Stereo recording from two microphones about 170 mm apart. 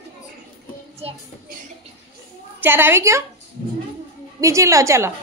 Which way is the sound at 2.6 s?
10° right (ahead or behind).